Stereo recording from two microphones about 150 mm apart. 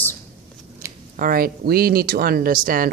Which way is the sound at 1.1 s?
70° right (ahead or behind).